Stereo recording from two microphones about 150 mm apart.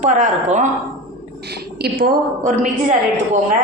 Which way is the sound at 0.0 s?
55° right (ahead or behind).